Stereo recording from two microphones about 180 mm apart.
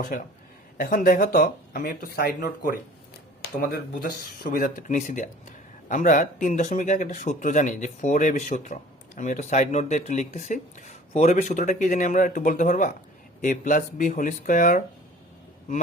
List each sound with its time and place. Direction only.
0.8 s speech: 50° left (ahead or behind)